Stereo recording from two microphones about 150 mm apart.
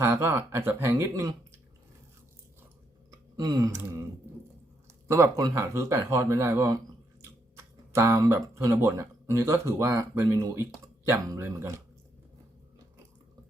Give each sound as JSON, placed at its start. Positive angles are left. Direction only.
{"t": 0.0, "sound": "speech", "side_deg": -15}
{"t": 3.1, "sound": "a sound", "side_deg": -25}
{"t": 5.0, "sound": "speech", "side_deg": -20}
{"t": 7.9, "sound": "speech", "side_deg": -20}